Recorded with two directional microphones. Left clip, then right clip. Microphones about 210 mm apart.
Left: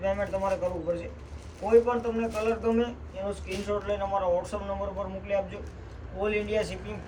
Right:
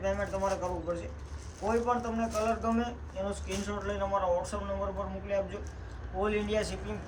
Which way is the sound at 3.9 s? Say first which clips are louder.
Left 2 dB; 5° right (ahead or behind).